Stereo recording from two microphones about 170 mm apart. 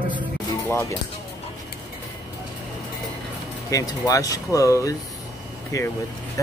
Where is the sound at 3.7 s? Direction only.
20° left (ahead or behind).